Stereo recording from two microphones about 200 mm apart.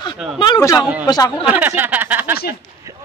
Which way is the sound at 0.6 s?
15° left (ahead or behind).